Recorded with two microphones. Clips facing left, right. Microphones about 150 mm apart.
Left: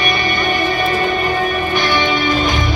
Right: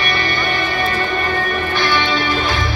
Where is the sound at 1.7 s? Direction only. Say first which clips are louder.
Even; 15° left (ahead or behind).